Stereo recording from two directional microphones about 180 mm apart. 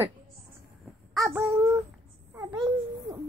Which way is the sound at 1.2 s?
15° right (ahead or behind).